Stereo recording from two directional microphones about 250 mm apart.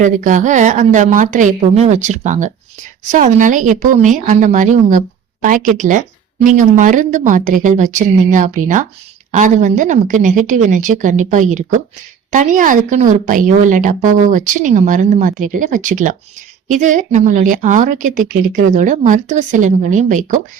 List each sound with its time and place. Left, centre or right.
0.0 s a woman's voice: right